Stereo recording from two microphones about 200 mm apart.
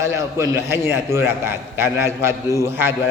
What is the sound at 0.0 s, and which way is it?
A man's voice, 15° right (ahead or behind).